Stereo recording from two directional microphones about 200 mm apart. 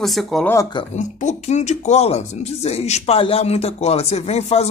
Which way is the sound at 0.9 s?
35° left (ahead or behind).